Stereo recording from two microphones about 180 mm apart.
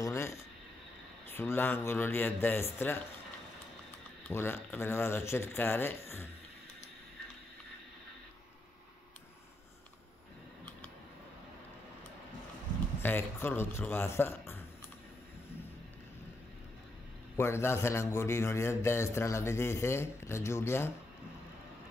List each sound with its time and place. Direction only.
0.0 s a sound: 15° left (ahead or behind)
1.2 s a man's voice: 10° left (ahead or behind)
4.3 s a man's voice: 15° left (ahead or behind)
13.0 s a man's voice: 10° left (ahead or behind)
17.4 s a man's voice: 15° left (ahead or behind)